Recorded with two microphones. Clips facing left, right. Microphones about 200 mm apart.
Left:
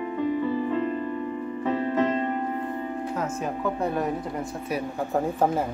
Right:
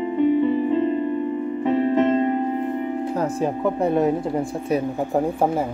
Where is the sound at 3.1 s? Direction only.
35° right (ahead or behind).